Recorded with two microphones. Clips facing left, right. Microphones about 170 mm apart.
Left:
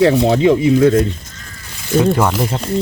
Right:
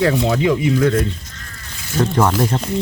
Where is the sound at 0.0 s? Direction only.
30° left (ahead or behind).